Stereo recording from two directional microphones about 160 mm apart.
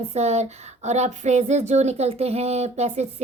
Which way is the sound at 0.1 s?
45° right (ahead or behind).